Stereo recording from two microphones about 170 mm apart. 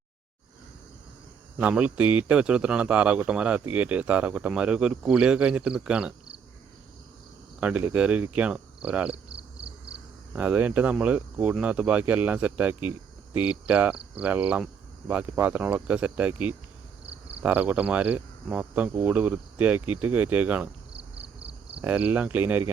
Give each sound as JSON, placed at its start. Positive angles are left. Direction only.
{"t": 1.5, "sound": "a man's voice", "side_deg": -5}
{"t": 7.6, "sound": "a man's voice", "side_deg": -10}
{"t": 9.3, "sound": "cricket", "side_deg": -35}
{"t": 10.3, "sound": "a man's voice", "side_deg": -10}
{"t": 21.3, "sound": "cricket", "side_deg": -35}
{"t": 21.8, "sound": "a man's voice", "side_deg": -10}